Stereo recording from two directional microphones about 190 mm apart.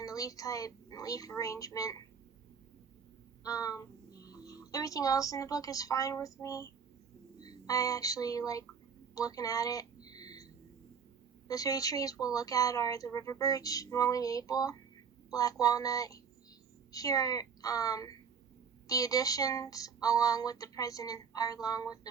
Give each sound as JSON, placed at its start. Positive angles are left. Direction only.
{"t": 0.0, "sound": "speech", "side_deg": 20}
{"t": 3.4, "sound": "a child's voice", "side_deg": 20}
{"t": 7.4, "sound": "music", "side_deg": 20}
{"t": 9.1, "sound": "a sound", "side_deg": 20}
{"t": 11.4, "sound": "speech", "side_deg": 20}